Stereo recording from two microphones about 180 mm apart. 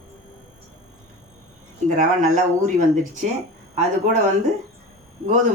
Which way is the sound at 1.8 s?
45° right (ahead or behind).